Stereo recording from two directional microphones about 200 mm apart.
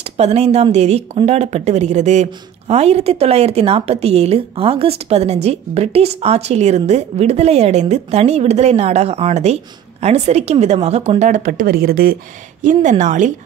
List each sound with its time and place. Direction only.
0.0 s a woman's voice: 30° right (ahead or behind); by 12.2 s 50° right (ahead or behind)
12.6 s a woman's voice: 40° right (ahead or behind)